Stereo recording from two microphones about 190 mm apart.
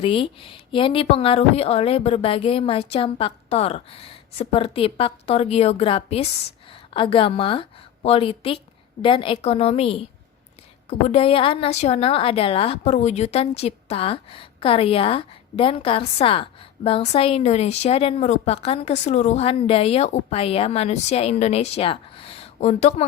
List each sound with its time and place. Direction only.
0.0 s a woman's voice: 30° left (ahead or behind)